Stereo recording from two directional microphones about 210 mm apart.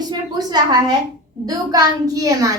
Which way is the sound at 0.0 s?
20° right (ahead or behind).